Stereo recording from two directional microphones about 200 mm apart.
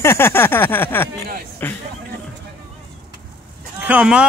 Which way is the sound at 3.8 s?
5° right (ahead or behind).